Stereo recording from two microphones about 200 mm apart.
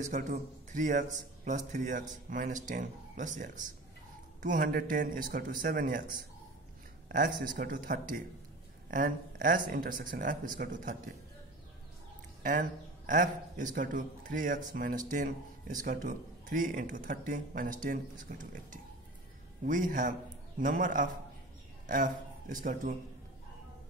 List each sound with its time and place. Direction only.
0.1 s speech: 35° right (ahead or behind)
7.1 s speech: 40° right (ahead or behind)
12.4 s a man's voice: 40° right (ahead or behind)